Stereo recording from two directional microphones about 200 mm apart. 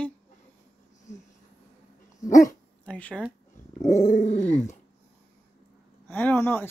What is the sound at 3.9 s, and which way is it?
Dog, 40° left (ahead or behind).